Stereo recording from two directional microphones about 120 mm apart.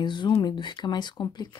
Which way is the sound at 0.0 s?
40° left (ahead or behind).